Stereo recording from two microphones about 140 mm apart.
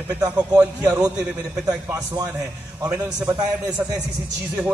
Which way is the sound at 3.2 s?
10° right (ahead or behind).